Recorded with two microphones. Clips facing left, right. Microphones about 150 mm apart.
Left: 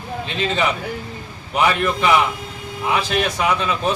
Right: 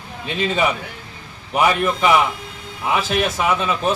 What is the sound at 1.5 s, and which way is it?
A man's voice, 5° right (ahead or behind).